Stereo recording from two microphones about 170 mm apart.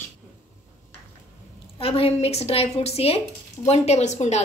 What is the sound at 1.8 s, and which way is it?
A woman's voice, 35° left (ahead or behind).